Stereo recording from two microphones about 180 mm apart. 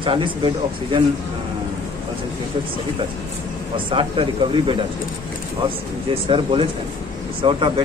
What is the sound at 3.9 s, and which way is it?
Speech, 30° right (ahead or behind).